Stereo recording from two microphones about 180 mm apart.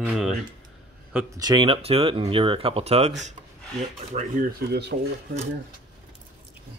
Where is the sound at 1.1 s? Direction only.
20° right (ahead or behind); by 4.5 s 40° right (ahead or behind).